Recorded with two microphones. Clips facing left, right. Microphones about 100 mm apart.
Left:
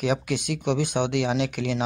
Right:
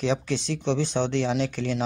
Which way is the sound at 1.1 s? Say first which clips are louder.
Left 1 dB; 70° left (ahead or behind).